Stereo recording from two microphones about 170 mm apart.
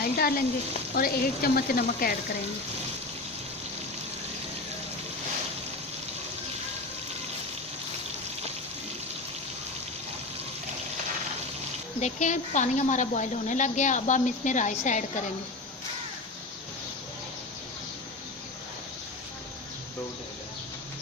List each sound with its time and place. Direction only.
0.0 s speech: 60° left (ahead or behind)
11.9 s a woman's voice: 45° left (ahead or behind)